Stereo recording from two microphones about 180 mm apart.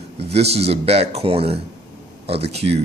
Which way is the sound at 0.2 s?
35° right (ahead or behind).